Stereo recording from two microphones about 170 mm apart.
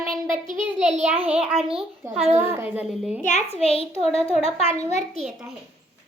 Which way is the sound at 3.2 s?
40° left (ahead or behind).